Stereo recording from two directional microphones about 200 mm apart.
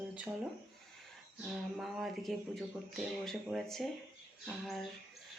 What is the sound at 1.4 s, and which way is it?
Speech, centre (ahead or behind).